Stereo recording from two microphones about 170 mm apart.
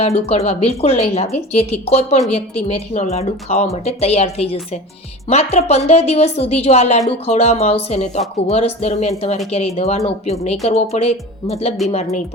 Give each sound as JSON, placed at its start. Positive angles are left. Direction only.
{"t": 0.0, "sound": "speech", "side_deg": 35}